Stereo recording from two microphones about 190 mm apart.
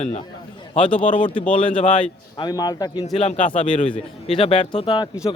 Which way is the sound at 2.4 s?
20° left (ahead or behind).